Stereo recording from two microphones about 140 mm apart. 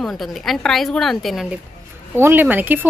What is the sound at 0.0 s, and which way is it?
Speech, centre (ahead or behind).